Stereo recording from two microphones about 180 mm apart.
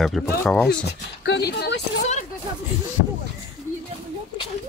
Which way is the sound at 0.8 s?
70° left (ahead or behind).